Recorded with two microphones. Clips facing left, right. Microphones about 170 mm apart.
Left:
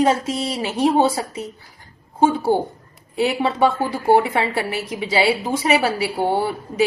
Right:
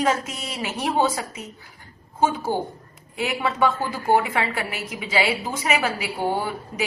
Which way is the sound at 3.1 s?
35° left (ahead or behind).